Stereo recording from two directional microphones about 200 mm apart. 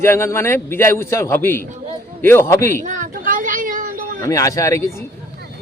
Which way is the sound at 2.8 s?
40° right (ahead or behind).